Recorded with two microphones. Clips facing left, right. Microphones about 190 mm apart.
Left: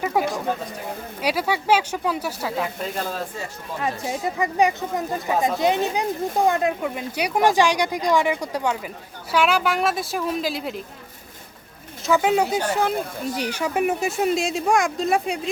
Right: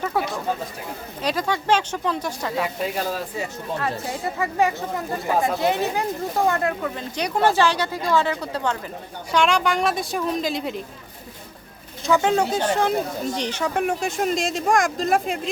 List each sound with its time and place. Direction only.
0.0 s a sound: 15° left (ahead or behind)
1.2 s speech: 10° left (ahead or behind)
2.8 s speech: 5° right (ahead or behind)
3.8 s speech: 15° left (ahead or behind)
12.0 s speech: 5° left (ahead or behind)